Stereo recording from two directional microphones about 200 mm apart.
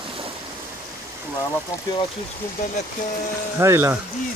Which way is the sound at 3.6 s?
15° right (ahead or behind).